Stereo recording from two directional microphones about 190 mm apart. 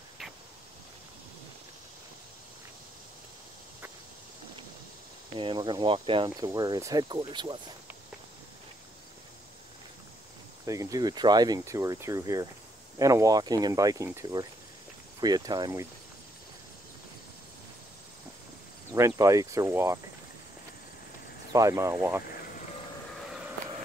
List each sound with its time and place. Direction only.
5.4 s speech: 25° right (ahead or behind)
10.6 s speech: 15° right (ahead or behind)
18.9 s speech: 15° right (ahead or behind)
21.5 s speech: 15° right (ahead or behind)